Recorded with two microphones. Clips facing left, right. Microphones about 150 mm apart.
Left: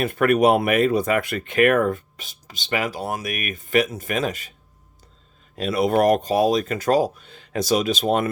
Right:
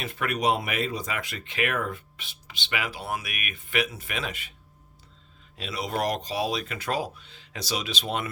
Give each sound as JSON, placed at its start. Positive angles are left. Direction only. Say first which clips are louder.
{"t": 0.0, "sound": "speech", "louder": "left 10 dB", "side_deg": 55}
{"t": 5.5, "sound": "speech", "louder": "left 11 dB", "side_deg": 50}